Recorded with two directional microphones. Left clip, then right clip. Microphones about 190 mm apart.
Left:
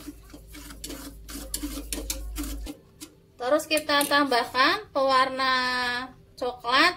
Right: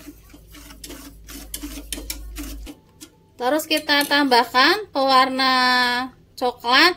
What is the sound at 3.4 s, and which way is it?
Speech, 55° right (ahead or behind).